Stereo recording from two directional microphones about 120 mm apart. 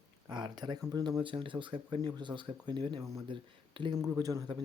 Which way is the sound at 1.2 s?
45° right (ahead or behind).